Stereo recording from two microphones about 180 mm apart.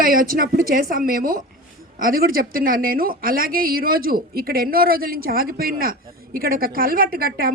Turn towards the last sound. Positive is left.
turn(degrees=-55)  # may be behind; listen again after turning